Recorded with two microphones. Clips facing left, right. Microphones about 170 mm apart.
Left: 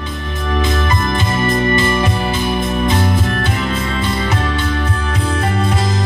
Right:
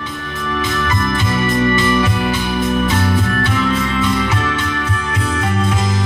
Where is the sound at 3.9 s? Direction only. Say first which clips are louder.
Right 2 dB; 35° left (ahead or behind).